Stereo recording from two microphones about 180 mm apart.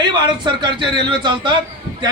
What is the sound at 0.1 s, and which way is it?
Speech, 25° right (ahead or behind).